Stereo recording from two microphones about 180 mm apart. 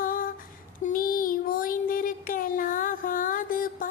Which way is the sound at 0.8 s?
50° left (ahead or behind).